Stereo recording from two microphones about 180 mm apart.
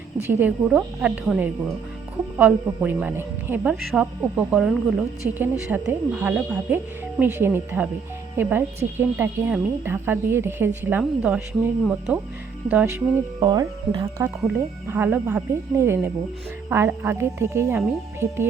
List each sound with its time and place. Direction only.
0.3 s a woman's voice: 10° right (ahead or behind)
13.4 s a woman's voice: 20° right (ahead or behind)